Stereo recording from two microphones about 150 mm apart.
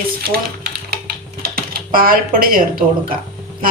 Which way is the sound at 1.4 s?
90° right.